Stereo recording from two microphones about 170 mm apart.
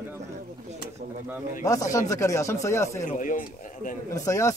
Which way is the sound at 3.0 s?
50° left (ahead or behind).